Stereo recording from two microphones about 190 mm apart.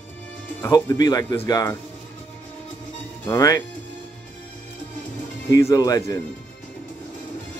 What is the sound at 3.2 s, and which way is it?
Speech, 20° left (ahead or behind).